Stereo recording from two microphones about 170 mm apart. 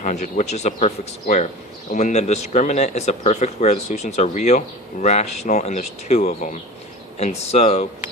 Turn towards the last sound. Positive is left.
turn(degrees=40)  # may be behind; listen again after turning